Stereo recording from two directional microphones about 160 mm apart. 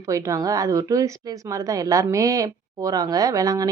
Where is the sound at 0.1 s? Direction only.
20° right (ahead or behind).